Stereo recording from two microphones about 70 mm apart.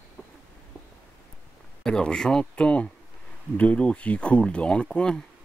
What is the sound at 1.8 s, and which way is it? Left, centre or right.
Speech, centre.